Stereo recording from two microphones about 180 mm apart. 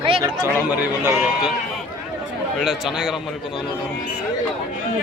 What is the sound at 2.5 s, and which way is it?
Speech, centre (ahead or behind).